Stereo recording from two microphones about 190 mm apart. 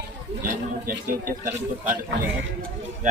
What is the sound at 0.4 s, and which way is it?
Speech, 45° right (ahead or behind).